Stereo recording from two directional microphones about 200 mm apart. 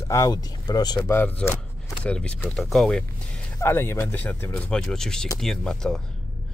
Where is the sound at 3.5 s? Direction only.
10° left (ahead or behind).